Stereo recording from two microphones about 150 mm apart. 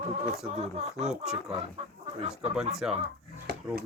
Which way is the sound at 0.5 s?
45° right (ahead or behind).